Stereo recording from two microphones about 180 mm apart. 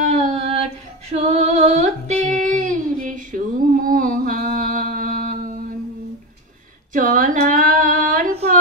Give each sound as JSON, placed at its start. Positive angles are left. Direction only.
{"t": 0.0, "sound": "a sound", "side_deg": -45}
{"t": 1.1, "sound": "female singing", "side_deg": -40}
{"t": 6.9, "sound": "female singing", "side_deg": -45}